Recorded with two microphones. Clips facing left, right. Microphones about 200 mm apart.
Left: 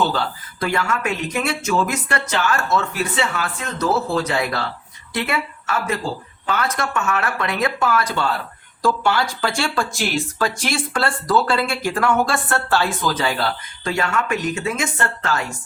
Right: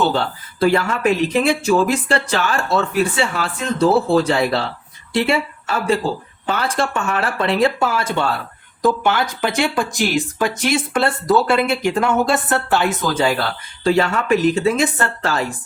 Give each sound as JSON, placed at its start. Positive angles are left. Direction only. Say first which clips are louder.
{"t": 0.1, "sound": "speech", "louder": "right 3 dB", "side_deg": -30}
{"t": 13.8, "sound": "speech", "louder": "right 6 dB", "side_deg": -30}